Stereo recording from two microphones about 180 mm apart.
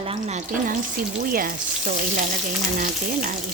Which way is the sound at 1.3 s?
50° right (ahead or behind).